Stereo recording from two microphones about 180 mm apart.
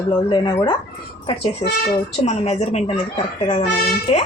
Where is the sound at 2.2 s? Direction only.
40° left (ahead or behind).